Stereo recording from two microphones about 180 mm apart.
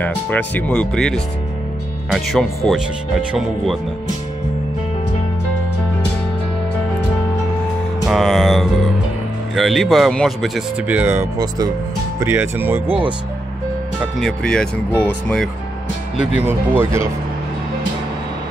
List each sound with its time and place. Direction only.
0.0 s speech: 10° left (ahead or behind)
8.1 s speech: centre (ahead or behind)
11.3 s speech: 20° right (ahead or behind)
14.2 s speech: 5° left (ahead or behind)
16.3 s speech: 10° right (ahead or behind)